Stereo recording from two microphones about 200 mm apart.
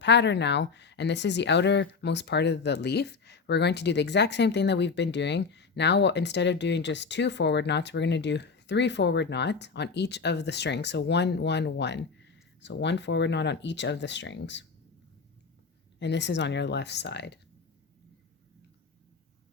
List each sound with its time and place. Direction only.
0.0 s speech: 60° left (ahead or behind)
16.0 s speech: 60° left (ahead or behind)